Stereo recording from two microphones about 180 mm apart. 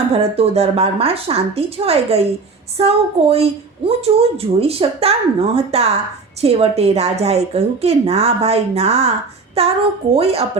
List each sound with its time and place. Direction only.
0.1 s a woman's voice: 35° right (ahead or behind)